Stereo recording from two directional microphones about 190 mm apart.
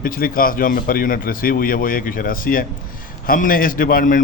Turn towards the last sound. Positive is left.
turn(degrees=45)  # may be behind; listen again after turning